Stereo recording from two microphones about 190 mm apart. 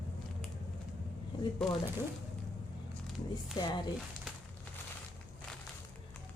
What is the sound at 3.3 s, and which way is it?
Speech, 25° left (ahead or behind).